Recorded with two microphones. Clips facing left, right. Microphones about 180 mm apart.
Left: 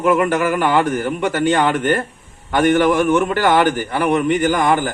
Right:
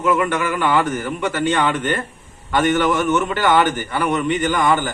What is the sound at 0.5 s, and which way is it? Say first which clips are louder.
Speech: left 2 dB; 65° left (ahead or behind).